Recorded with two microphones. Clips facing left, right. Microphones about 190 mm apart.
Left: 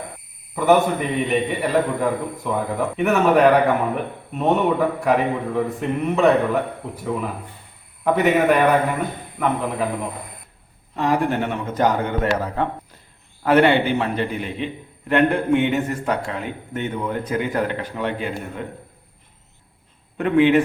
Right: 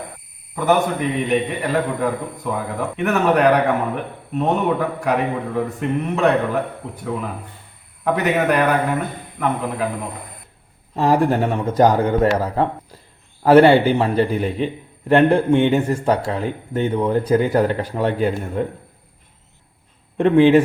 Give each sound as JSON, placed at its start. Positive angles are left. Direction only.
{"t": 0.5, "sound": "a man's voice", "side_deg": 0}
{"t": 10.9, "sound": "a man's voice", "side_deg": -35}
{"t": 20.1, "sound": "a man's voice", "side_deg": -30}